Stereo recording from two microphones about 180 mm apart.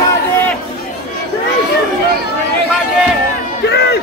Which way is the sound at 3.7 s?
70° left (ahead or behind).